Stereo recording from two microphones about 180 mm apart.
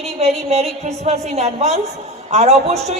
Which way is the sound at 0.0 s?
35° right (ahead or behind).